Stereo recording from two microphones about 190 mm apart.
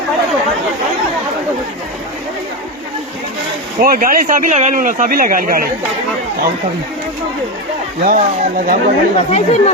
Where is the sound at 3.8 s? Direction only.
50° right (ahead or behind).